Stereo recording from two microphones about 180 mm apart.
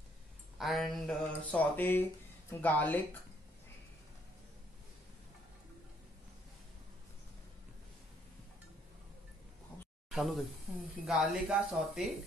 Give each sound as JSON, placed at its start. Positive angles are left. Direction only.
{"t": 0.6, "sound": "speech", "side_deg": 0}
{"t": 10.0, "sound": "speech", "side_deg": 0}